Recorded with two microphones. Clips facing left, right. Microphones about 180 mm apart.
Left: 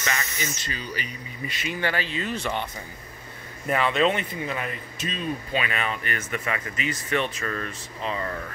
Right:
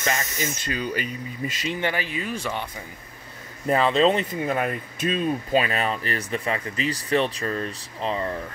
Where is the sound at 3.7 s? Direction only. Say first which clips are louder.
Right 3 dB; 30° right (ahead or behind).